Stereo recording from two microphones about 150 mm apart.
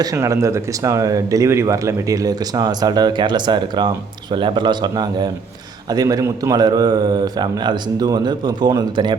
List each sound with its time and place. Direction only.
0.0 s speech: 20° right (ahead or behind)